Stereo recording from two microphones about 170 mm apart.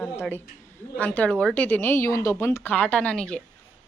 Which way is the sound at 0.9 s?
10° left (ahead or behind).